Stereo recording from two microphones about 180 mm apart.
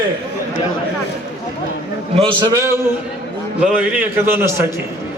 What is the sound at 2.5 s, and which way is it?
A man's voice, 15° right (ahead or behind).